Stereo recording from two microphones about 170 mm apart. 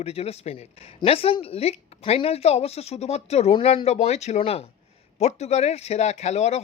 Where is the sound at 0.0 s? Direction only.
35° left (ahead or behind).